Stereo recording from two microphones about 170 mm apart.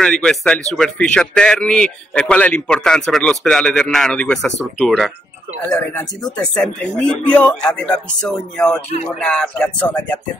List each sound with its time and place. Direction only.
0.0 s a man's voice: 5° left (ahead or behind)